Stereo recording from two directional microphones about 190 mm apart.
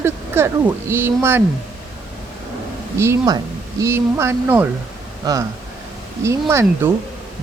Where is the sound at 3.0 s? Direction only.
15° right (ahead or behind).